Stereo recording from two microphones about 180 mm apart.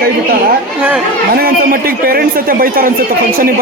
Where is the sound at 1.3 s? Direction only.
55° right (ahead or behind).